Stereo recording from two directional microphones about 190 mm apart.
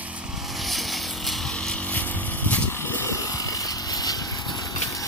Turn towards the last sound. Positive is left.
turn(degrees=20)  # may be behind; listen again after turning